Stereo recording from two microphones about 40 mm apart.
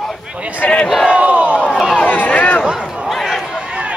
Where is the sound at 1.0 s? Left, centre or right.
Right.